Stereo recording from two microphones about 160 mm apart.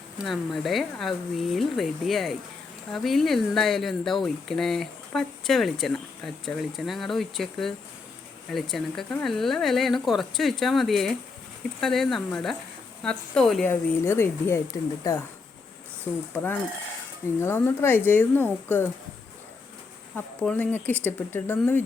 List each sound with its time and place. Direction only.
0.3 s speech: centre (ahead or behind)
14.0 s speech: 15° left (ahead or behind)
16.3 s speech: 10° left (ahead or behind)
20.1 s speech: 10° left (ahead or behind)